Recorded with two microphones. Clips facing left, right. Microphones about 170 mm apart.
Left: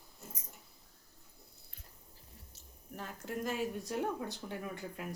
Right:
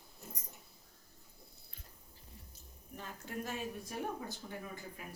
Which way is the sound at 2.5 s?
75° left (ahead or behind).